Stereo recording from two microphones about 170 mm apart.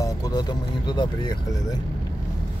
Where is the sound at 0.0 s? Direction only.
20° left (ahead or behind).